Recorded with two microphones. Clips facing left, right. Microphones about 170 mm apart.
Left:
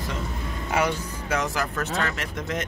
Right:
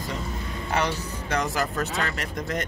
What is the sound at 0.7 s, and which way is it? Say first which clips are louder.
Speech: left 2 dB; 5° left (ahead or behind).